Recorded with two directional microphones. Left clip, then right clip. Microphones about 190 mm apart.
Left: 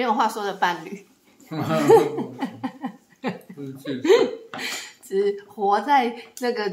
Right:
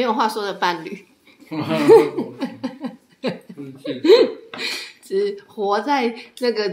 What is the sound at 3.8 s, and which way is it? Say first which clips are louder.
Speech: right 5 dB; 35° right (ahead or behind).